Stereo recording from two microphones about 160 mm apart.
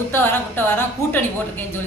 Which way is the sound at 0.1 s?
15° left (ahead or behind).